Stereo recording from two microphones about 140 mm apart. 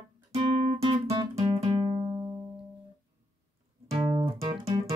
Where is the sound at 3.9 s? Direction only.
35° right (ahead or behind).